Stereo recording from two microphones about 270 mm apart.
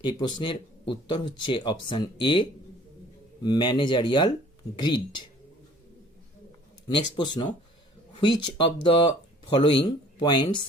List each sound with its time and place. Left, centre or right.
0.0 s speech: centre
7.3 s speech: centre